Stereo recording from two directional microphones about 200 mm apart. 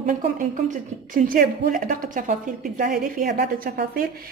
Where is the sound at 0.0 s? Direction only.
40° right (ahead or behind).